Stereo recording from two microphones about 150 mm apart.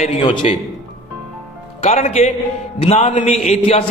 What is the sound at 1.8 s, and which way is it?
A man's voice, 45° left (ahead or behind).